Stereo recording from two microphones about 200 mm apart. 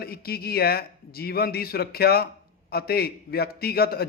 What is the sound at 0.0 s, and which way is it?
Speech, 50° left (ahead or behind).